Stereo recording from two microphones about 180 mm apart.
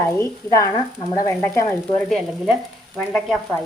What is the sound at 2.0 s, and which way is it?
Speech, centre (ahead or behind).